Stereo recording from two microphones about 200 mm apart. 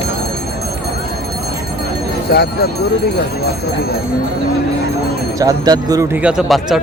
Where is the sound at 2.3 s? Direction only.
50° left (ahead or behind).